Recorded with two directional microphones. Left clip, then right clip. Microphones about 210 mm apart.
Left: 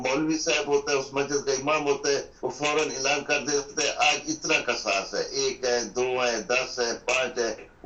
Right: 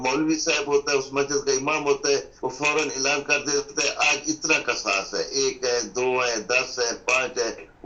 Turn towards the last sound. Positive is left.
turn(degrees=-25)  # may be behind; listen again after turning